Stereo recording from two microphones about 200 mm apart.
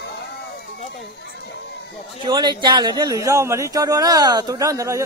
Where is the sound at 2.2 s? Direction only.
20° right (ahead or behind).